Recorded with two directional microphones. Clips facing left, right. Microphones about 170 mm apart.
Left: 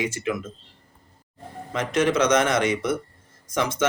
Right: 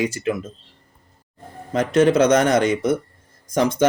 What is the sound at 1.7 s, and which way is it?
Speech, 35° right (ahead or behind).